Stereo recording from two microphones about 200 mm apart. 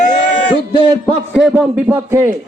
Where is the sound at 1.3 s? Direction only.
5° right (ahead or behind).